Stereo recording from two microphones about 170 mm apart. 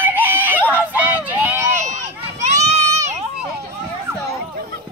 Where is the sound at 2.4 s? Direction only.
45° right (ahead or behind).